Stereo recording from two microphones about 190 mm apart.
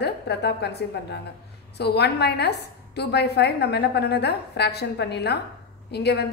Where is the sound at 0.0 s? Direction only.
60° left (ahead or behind).